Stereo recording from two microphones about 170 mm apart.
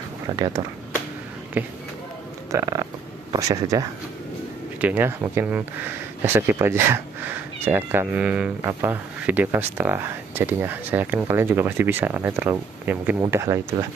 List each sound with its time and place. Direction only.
0.3 s speech: 25° right (ahead or behind)
1.6 s speech: 10° right (ahead or behind)
4.8 s speech: 10° right (ahead or behind)